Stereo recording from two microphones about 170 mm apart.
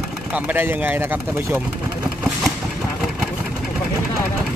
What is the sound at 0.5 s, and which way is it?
Speech, 10° right (ahead or behind).